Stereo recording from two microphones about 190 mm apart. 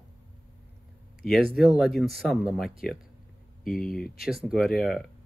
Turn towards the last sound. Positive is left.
turn(degrees=0)  # may be behind; listen again after turning